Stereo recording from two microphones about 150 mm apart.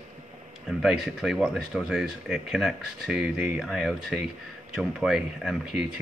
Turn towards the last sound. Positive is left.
turn(degrees=-5)  # may be behind; listen again after turning